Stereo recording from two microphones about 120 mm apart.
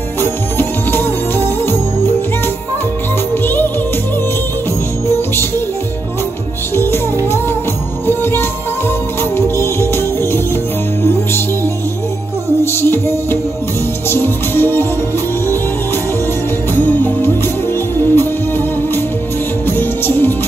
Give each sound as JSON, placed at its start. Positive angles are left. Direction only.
{"t": 0.2, "sound": "music", "side_deg": 20}
{"t": 3.4, "sound": "music", "side_deg": 15}
{"t": 5.0, "sound": "music", "side_deg": 20}
{"t": 6.7, "sound": "music", "side_deg": 20}
{"t": 8.1, "sound": "music", "side_deg": 20}
{"t": 9.6, "sound": "music", "side_deg": 20}
{"t": 12.7, "sound": "music", "side_deg": 20}
{"t": 16.7, "sound": "music", "side_deg": 15}
{"t": 19.6, "sound": "music", "side_deg": 20}